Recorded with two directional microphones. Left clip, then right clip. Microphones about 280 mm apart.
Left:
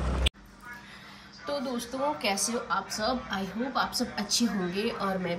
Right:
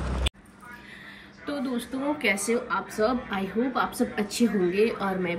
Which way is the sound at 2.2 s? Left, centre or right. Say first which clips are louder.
Right 4 dB; centre.